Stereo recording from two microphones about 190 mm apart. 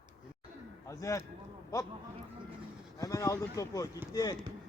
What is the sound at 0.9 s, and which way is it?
Speech, 15° left (ahead or behind).